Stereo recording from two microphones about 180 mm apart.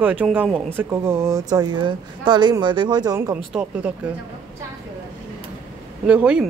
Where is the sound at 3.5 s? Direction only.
5° right (ahead or behind).